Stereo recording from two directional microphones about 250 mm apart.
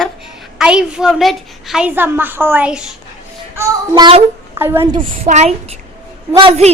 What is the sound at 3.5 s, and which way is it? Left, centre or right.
Child singing, centre.